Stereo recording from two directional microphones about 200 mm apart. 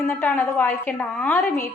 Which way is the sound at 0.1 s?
10° left (ahead or behind).